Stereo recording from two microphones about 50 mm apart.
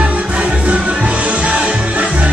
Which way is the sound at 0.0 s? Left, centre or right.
Right.